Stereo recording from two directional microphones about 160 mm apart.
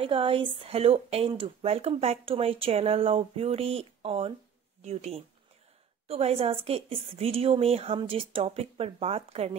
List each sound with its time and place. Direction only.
0.0 s speech: 35° right (ahead or behind)